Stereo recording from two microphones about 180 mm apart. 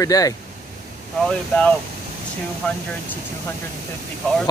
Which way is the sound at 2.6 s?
5° left (ahead or behind).